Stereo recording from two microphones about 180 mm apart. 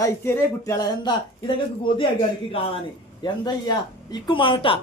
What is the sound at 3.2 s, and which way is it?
Speech, 25° left (ahead or behind).